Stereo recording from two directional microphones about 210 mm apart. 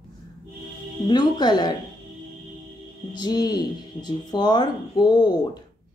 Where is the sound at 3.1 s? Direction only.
20° left (ahead or behind).